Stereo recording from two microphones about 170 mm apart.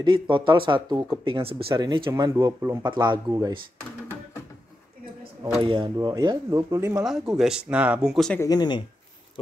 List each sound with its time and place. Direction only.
0.0 s speech: 30° right (ahead or behind)
5.6 s speech: 30° right (ahead or behind)
7.1 s speech: centre (ahead or behind)
8.4 s speech: 25° left (ahead or behind)